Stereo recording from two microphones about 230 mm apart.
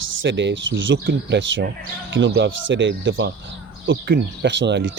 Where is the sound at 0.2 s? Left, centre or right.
Right.